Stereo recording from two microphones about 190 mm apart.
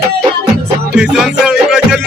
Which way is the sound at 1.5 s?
5° right (ahead or behind).